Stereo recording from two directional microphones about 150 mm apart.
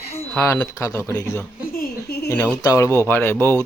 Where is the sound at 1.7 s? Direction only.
85° left.